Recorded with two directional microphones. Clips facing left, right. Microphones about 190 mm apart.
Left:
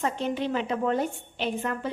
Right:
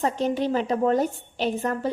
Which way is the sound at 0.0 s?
40° right (ahead or behind).